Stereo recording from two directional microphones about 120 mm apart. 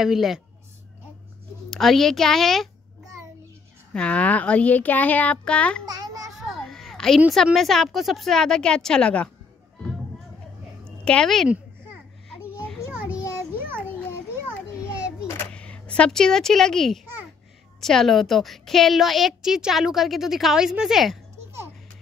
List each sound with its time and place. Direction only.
0.0 s a woman's voice: 5° right (ahead or behind)
1.7 s a woman's voice: centre (ahead or behind)
3.9 s speech: 10° left (ahead or behind)
5.9 s children playing: 30° right (ahead or behind)
6.4 s children playing: 5° left (ahead or behind)
7.2 s a woman's voice: 5° right (ahead or behind); by 9.3 s 10° left (ahead or behind)
11.1 s a woman's voice: 5° left (ahead or behind)
11.4 s a sound: 10° right (ahead or behind)
15.5 s a woman's voice: 10° left (ahead or behind)